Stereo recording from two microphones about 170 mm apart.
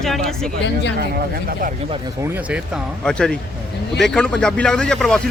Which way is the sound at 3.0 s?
5° left (ahead or behind).